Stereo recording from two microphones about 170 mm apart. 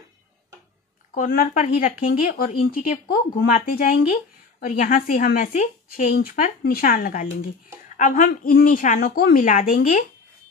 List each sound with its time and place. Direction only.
1.1 s a woman's voice: 55° left (ahead or behind)
6.1 s a woman's voice: 55° left (ahead or behind)